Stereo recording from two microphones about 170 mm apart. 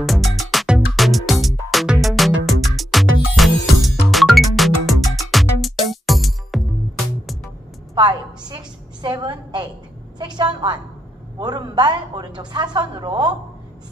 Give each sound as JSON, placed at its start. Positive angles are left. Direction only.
{"t": 0.0, "sound": "music", "side_deg": 0}
{"t": 7.9, "sound": "a sound", "side_deg": -25}
{"t": 11.3, "sound": "a woman's voice", "side_deg": -25}